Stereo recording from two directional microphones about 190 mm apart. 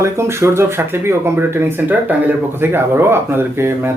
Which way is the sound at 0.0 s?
15° right (ahead or behind).